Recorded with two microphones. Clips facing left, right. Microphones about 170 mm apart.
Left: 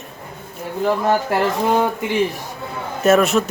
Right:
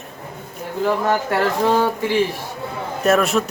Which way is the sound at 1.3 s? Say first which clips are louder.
Even; 20° left (ahead or behind).